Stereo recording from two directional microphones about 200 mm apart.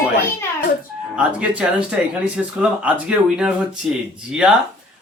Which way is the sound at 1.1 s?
5° right (ahead or behind).